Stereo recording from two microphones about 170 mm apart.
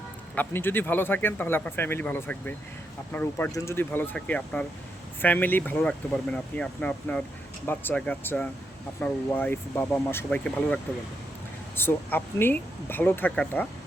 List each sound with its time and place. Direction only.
0.3 s speech: 10° left (ahead or behind)
11.8 s speech: 10° left (ahead or behind)